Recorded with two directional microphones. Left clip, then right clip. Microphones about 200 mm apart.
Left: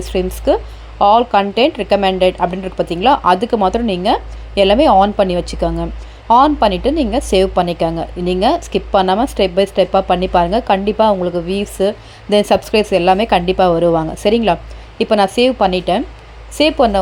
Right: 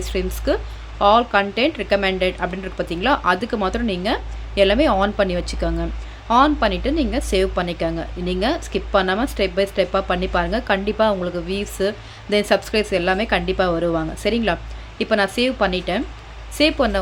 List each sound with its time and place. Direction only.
0.0 s a woman's voice: 20° left (ahead or behind)